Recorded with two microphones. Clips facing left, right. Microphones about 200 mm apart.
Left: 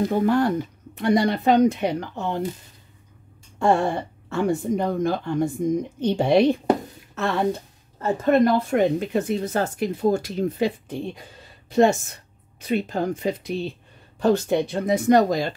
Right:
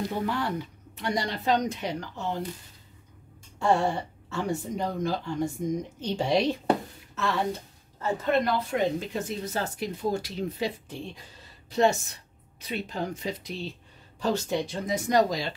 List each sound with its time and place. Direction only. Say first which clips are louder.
0.1 s speech: left 9 dB; 50° left (ahead or behind)
3.5 s a woman's voice: left 4 dB; 55° left (ahead or behind)